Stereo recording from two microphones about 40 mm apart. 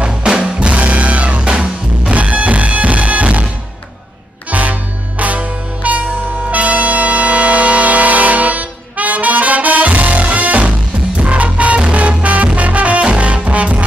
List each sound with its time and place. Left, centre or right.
0.4 s music: right
4.5 s music: right